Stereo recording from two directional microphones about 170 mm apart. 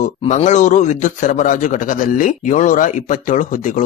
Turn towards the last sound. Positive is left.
turn(degrees=50)  # may be behind; listen again after turning